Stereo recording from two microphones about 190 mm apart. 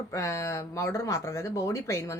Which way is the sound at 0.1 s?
15° left (ahead or behind).